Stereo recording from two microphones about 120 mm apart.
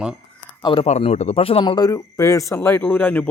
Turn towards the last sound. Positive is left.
turn(degrees=15)  # may be behind; listen again after turning